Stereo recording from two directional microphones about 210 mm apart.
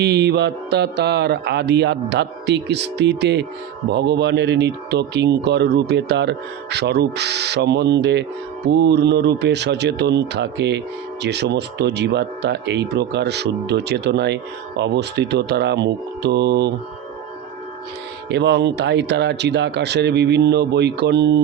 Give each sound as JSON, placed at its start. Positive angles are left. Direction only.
{"t": 0.0, "sound": "a man's voice", "side_deg": -50}
{"t": 18.3, "sound": "a man's voice", "side_deg": -55}